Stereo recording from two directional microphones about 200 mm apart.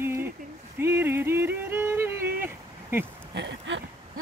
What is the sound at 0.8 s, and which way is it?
Yodeling, 10° right (ahead or behind).